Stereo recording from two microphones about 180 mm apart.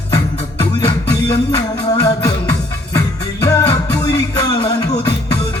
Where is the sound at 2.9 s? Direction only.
15° left (ahead or behind).